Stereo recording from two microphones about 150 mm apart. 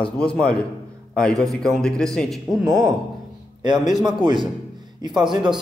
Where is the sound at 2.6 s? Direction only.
25° right (ahead or behind).